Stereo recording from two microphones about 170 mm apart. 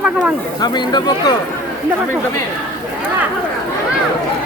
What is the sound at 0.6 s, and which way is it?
Speech, 25° left (ahead or behind).